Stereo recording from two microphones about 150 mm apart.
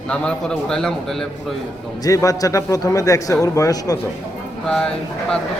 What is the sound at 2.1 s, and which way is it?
Speech, 20° left (ahead or behind).